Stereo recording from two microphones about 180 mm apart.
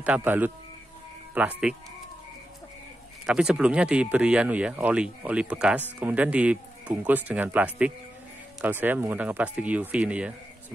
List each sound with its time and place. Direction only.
0.0 s speech: 10° right (ahead or behind)
3.3 s speech: 5° right (ahead or behind)